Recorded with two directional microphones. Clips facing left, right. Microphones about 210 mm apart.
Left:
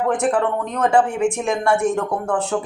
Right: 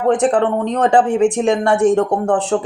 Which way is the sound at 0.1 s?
30° right (ahead or behind).